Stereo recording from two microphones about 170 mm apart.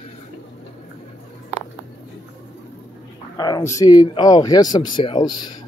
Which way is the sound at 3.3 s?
25° left (ahead or behind).